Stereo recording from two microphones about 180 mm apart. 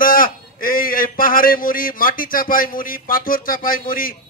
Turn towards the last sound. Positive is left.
turn(degrees=50)  # may be behind; listen again after turning